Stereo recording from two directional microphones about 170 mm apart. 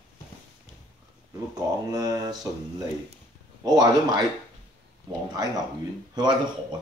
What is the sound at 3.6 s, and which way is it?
Speech, 25° right (ahead or behind).